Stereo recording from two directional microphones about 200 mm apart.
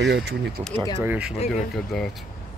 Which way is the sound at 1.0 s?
5° right (ahead or behind).